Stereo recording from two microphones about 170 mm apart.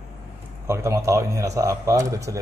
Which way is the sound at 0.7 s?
15° right (ahead or behind).